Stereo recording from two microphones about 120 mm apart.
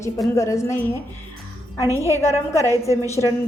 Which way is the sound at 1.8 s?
25° right (ahead or behind).